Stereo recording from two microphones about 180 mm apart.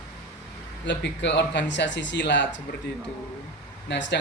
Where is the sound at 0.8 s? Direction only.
75° left (ahead or behind).